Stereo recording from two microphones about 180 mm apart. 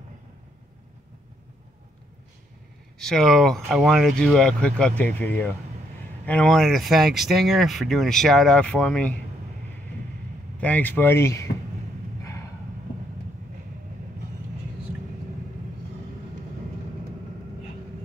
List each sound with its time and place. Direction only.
3.0 s speech: centre (ahead or behind)
10.6 s speech: 10° left (ahead or behind)
12.2 s a sound: 15° left (ahead or behind)